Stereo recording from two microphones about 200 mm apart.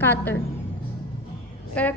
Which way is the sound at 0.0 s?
10° left (ahead or behind).